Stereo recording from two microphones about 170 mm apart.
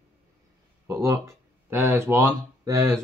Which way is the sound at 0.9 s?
20° right (ahead or behind).